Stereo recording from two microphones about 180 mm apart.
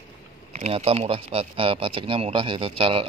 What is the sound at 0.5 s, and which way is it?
Speech, 35° right (ahead or behind).